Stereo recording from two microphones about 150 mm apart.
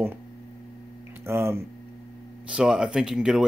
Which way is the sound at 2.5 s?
5° right (ahead or behind).